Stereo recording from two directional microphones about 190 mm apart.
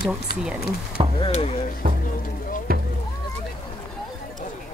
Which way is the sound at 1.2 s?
30° left (ahead or behind).